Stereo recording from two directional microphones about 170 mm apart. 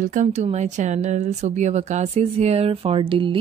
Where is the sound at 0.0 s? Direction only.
50° right (ahead or behind).